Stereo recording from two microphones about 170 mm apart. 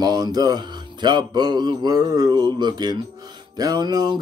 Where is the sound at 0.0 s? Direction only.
20° right (ahead or behind).